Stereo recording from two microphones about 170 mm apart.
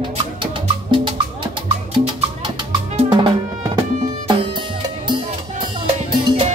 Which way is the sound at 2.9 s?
35° right (ahead or behind).